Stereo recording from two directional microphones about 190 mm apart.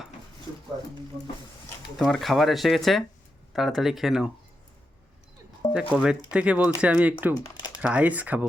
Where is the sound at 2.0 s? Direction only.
Centre (ahead or behind).